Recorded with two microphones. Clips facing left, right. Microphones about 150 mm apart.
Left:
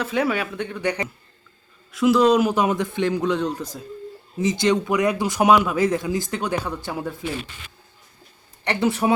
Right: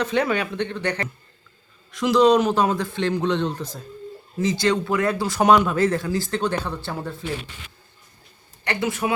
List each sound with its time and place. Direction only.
0.0 s speech: 5° left (ahead or behind)
5.5 s speech: 5° left (ahead or behind)
8.6 s speech: 30° left (ahead or behind)